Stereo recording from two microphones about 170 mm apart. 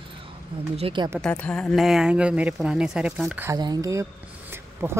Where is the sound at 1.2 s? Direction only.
5° left (ahead or behind); by 3.5 s 10° right (ahead or behind).